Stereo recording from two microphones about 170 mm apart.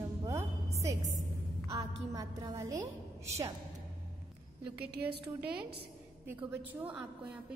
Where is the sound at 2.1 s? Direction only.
20° right (ahead or behind).